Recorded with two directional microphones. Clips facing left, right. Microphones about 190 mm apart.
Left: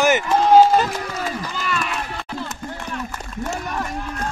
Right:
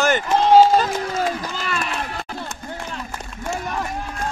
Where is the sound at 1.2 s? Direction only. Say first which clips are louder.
Right 3 dB; 45° right (ahead or behind).